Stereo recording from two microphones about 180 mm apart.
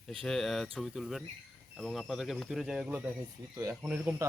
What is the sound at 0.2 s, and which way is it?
Speech, centre (ahead or behind).